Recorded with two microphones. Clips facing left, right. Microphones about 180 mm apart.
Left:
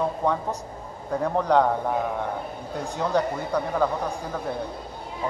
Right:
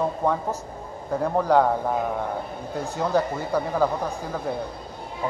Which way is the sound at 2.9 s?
5° right (ahead or behind).